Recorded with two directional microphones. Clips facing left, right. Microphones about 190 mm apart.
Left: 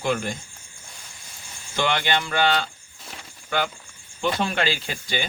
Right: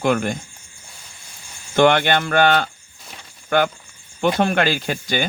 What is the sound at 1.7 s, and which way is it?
Speech, 55° right (ahead or behind).